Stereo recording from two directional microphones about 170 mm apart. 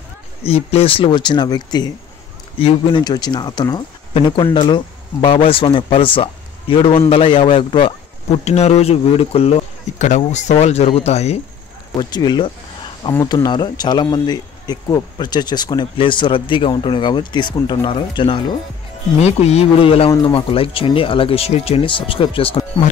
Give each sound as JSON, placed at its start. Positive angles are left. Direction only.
{"t": 0.4, "sound": "speech", "side_deg": 35}
{"t": 12.0, "sound": "speech", "side_deg": 25}